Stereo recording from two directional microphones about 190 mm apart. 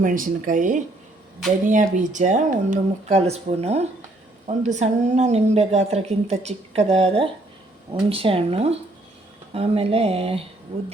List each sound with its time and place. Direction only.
0.0 s a woman's voice: 45° right (ahead or behind)